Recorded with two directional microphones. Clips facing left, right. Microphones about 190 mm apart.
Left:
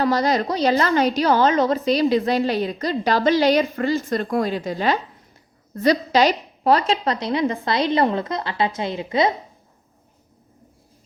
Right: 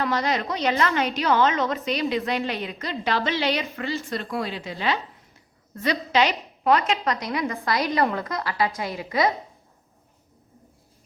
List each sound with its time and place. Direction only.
0.0 s a woman's voice: 35° left (ahead or behind)